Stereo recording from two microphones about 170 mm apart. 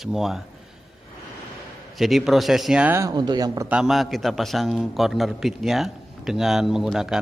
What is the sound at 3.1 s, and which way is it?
Speech, 25° right (ahead or behind).